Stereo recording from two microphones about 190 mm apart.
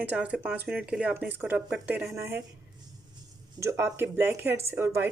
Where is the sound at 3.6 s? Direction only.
10° right (ahead or behind).